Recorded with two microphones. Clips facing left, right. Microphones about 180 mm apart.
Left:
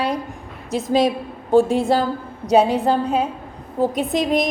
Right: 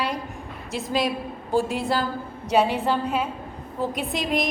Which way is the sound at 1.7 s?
45° left (ahead or behind).